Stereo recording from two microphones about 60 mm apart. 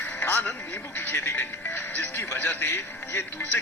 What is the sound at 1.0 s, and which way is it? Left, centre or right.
Speech, left.